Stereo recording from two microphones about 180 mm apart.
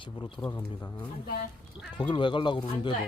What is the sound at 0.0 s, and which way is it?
Speech, 25° left (ahead or behind).